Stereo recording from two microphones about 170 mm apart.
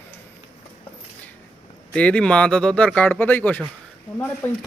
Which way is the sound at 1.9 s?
5° left (ahead or behind).